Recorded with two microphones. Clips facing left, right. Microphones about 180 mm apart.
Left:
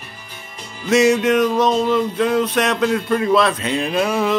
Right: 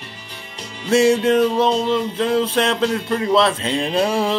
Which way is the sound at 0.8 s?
30° right (ahead or behind).